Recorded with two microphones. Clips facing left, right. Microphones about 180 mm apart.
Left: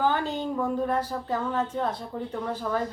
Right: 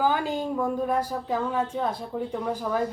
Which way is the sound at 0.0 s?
10° right (ahead or behind).